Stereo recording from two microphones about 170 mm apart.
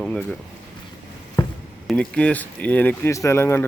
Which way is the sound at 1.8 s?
5° left (ahead or behind).